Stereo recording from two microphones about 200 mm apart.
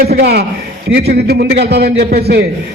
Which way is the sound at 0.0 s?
50° right (ahead or behind).